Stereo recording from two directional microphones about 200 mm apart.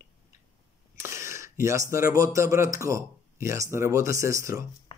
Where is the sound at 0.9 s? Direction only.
15° right (ahead or behind).